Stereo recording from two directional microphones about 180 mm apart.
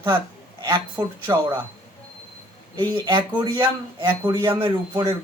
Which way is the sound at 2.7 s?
25° right (ahead or behind).